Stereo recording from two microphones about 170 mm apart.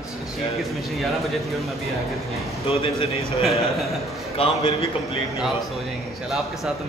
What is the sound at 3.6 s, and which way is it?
Speech, centre (ahead or behind).